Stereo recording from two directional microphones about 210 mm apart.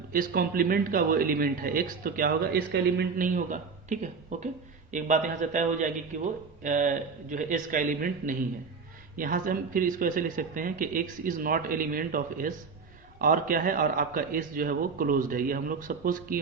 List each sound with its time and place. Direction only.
0.1 s a man's voice: 45° right (ahead or behind)